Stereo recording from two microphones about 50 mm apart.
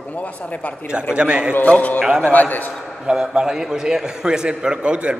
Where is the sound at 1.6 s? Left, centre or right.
Left.